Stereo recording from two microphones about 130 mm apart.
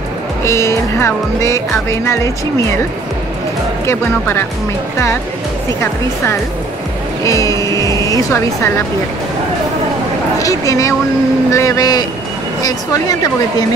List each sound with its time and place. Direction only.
0.4 s speech: 20° left (ahead or behind)
3.8 s speech: 20° left (ahead or behind)
7.2 s speech: 25° left (ahead or behind)
10.4 s speech: 25° left (ahead or behind)